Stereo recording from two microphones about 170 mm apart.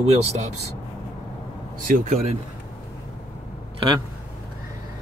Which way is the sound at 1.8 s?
50° right (ahead or behind).